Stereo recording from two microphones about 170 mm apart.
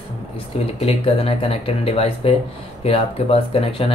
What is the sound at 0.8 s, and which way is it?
Speech, 35° left (ahead or behind).